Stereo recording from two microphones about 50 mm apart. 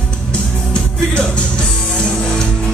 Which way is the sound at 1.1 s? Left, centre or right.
Centre.